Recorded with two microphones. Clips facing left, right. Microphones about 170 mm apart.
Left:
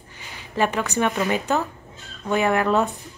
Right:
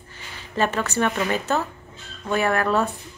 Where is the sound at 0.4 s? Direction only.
15° left (ahead or behind).